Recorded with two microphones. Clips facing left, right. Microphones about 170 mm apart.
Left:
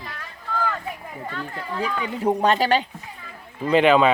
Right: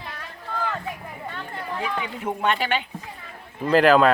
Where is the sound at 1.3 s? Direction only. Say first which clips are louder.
Left 3 dB; 25° right (ahead or behind).